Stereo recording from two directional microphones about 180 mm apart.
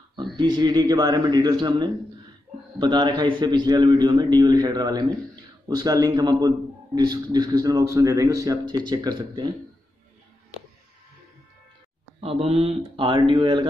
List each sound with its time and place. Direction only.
0.4 s a man's voice: 25° right (ahead or behind)
12.2 s a man's voice: 35° right (ahead or behind)